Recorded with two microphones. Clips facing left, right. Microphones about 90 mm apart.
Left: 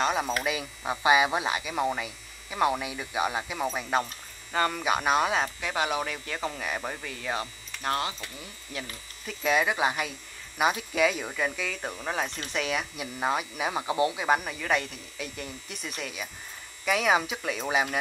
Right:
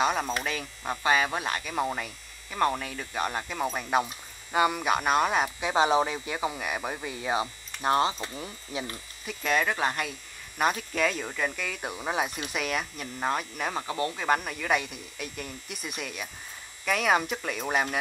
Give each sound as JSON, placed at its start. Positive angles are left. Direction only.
{"t": 0.0, "sound": "speech", "side_deg": 5}
{"t": 5.6, "sound": "speech", "side_deg": -25}
{"t": 7.0, "sound": "speech", "side_deg": -20}
{"t": 9.2, "sound": "speech", "side_deg": 0}